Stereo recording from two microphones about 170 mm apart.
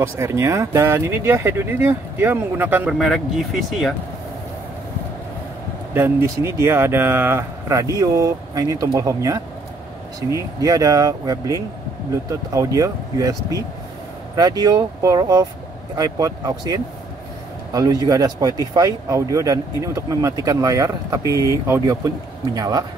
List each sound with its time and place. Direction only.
0.0 s speech: 15° right (ahead or behind); by 3.9 s centre (ahead or behind)
5.9 s speech: 15° right (ahead or behind)